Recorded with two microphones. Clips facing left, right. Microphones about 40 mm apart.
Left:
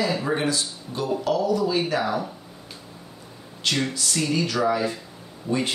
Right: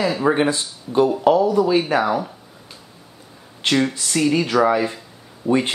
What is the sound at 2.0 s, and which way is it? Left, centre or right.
Speech, centre.